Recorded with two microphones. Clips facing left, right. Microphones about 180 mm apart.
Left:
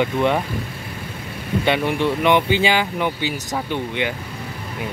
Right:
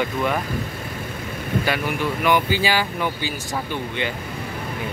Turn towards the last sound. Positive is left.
turn(degrees=20)  # may be behind; listen again after turning